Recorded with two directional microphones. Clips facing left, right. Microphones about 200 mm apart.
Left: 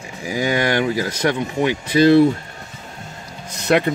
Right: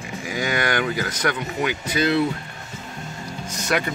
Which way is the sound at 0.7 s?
25° left (ahead or behind).